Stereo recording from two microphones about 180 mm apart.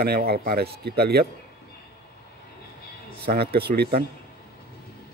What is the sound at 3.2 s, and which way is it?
Speech, 60° right (ahead or behind).